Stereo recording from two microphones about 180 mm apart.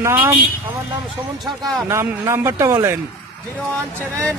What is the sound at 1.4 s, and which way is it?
Speech, centre (ahead or behind).